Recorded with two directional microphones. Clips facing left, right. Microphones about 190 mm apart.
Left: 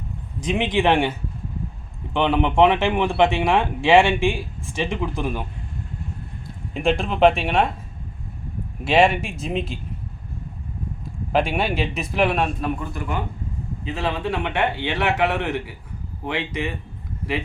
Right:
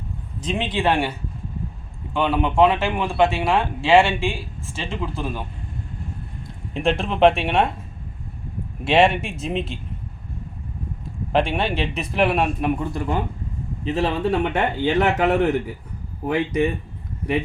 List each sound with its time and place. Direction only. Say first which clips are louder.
0.4 s speech: left 2 dB; 15° left (ahead or behind)
2.1 s speech: left 1 dB; 20° left (ahead or behind)
6.7 s a man's voice: even; centre (ahead or behind)
8.8 s a man's voice: even; centre (ahead or behind)
11.3 s a man's voice: even; 5° left (ahead or behind)
12.6 s a man's voice: right 4 dB; 25° right (ahead or behind)
13.8 s speech: right 4 dB; 40° right (ahead or behind)